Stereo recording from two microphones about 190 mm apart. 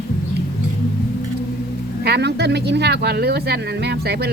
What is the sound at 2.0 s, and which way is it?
Speech, 60° right (ahead or behind).